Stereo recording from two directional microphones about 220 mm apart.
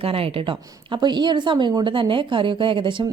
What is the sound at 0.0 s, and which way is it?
A woman's voice, 25° right (ahead or behind).